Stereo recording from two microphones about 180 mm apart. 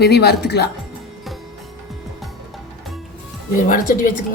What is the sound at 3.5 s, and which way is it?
Speech, 50° left (ahead or behind).